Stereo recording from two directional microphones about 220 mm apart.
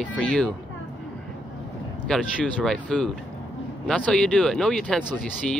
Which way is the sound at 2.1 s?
Centre (ahead or behind).